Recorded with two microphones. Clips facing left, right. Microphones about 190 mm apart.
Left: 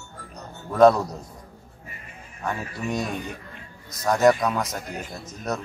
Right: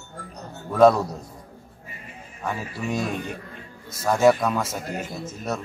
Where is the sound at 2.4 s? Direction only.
5° right (ahead or behind).